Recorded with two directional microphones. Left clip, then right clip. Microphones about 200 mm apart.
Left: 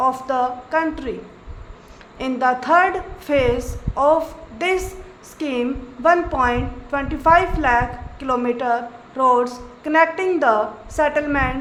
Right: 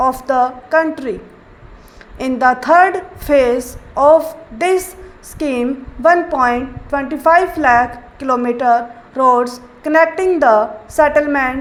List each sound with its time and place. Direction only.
0.0 s a woman's voice: 20° right (ahead or behind)
2.1 s a woman's voice: 25° right (ahead or behind)